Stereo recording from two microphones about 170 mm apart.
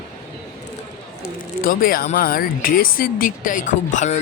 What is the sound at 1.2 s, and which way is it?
Speech, 55° left (ahead or behind).